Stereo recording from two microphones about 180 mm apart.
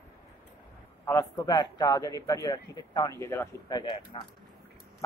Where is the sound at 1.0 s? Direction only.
20° left (ahead or behind).